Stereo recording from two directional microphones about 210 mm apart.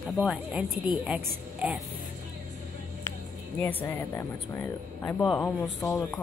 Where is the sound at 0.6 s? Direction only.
40° right (ahead or behind).